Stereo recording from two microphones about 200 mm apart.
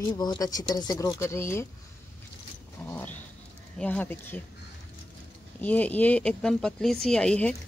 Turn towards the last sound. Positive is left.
turn(degrees=5)  # may be behind; listen again after turning